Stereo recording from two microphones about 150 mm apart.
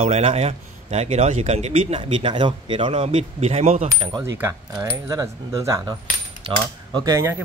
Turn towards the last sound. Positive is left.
turn(degrees=-20)  # may be behind; listen again after turning